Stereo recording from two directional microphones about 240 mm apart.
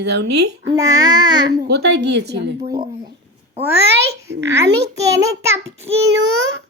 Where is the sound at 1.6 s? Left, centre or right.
Right.